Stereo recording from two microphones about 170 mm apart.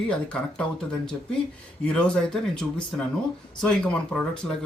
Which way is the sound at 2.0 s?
5° left (ahead or behind).